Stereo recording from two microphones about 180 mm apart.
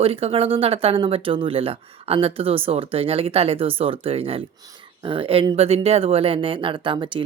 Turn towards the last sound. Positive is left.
turn(degrees=-30)  # may be behind; listen again after turning